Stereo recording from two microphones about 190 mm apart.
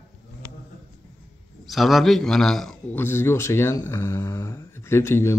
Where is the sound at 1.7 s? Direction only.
Centre (ahead or behind).